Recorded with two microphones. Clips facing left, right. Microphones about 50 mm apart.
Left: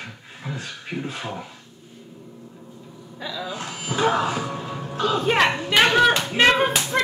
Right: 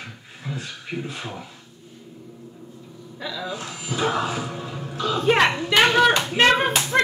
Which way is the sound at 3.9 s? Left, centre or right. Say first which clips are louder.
Left 3 dB; left.